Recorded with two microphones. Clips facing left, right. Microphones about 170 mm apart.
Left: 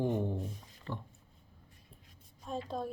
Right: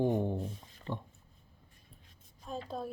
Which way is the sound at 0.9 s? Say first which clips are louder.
Right 2 dB; 20° right (ahead or behind).